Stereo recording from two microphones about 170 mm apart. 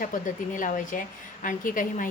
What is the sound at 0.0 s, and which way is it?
Speech, 50° left (ahead or behind).